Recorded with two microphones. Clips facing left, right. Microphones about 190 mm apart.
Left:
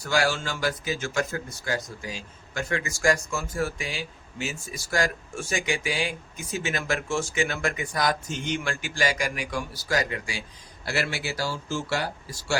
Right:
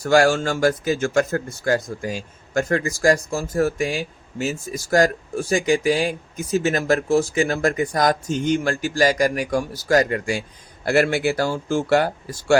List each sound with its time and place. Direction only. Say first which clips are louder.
0.0 s speech: right 9 dB; 50° right (ahead or behind)